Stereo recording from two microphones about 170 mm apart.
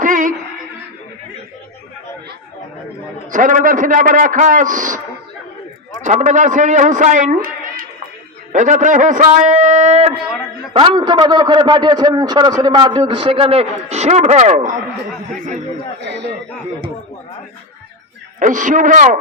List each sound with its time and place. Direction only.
0.0 s a sound: 50° right (ahead or behind)
3.3 s a man's voice: 50° right (ahead or behind)
6.1 s a man's voice: 45° right (ahead or behind)
10.8 s a man's voice: 30° right (ahead or behind); by 14.8 s 45° right (ahead or behind)
16.0 s speech: 80° right
18.3 s a man's voice: 50° right (ahead or behind)